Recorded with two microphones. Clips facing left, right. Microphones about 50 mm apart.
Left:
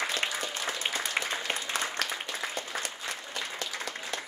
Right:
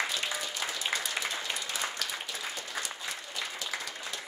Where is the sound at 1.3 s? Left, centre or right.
Left.